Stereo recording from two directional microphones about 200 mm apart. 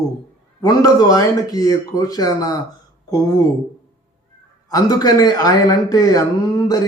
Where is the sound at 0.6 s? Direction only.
20° left (ahead or behind).